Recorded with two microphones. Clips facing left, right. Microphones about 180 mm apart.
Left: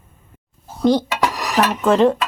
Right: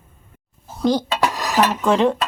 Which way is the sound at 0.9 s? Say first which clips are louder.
Left 2 dB; 20° right (ahead or behind).